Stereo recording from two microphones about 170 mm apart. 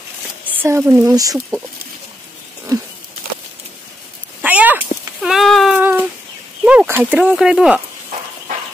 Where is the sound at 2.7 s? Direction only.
20° right (ahead or behind).